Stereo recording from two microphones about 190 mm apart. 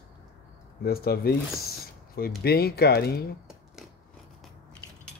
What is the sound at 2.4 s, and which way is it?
Speech, 55° left (ahead or behind).